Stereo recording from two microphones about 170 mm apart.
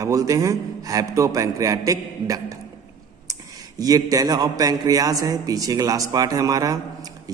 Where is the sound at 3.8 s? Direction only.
20° right (ahead or behind).